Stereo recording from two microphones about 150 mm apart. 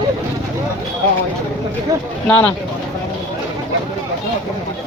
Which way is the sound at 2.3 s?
10° left (ahead or behind).